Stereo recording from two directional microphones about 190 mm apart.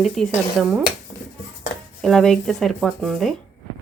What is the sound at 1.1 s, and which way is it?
Dishes, 35° left (ahead or behind).